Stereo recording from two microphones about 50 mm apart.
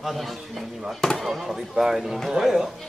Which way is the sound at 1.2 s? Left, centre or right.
Centre.